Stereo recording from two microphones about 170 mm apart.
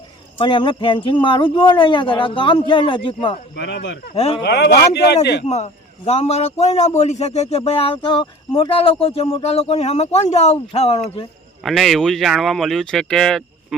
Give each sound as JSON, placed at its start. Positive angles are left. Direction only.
{"t": 0.3, "sound": "speech", "side_deg": 30}
{"t": 3.5, "sound": "speech", "side_deg": 85}
{"t": 4.1, "sound": "a man's voice", "side_deg": 35}
{"t": 4.4, "sound": "speech", "side_deg": 75}
{"t": 5.5, "sound": "a man's voice", "side_deg": 40}
{"t": 11.6, "sound": "speech", "side_deg": 0}